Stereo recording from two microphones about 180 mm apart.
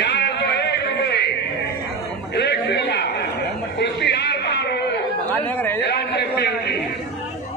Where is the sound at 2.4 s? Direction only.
70° left (ahead or behind).